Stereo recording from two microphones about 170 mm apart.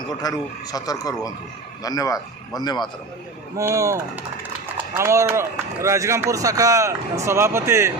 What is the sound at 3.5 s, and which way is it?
Speech, 20° right (ahead or behind).